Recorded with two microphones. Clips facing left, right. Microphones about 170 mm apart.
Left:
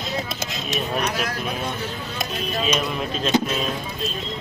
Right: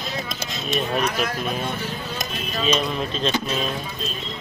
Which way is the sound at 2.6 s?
10° left (ahead or behind).